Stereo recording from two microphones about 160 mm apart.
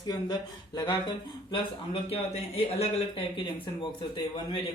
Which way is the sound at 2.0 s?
40° left (ahead or behind).